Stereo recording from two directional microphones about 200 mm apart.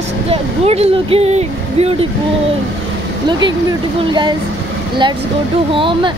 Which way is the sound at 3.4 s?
20° right (ahead or behind).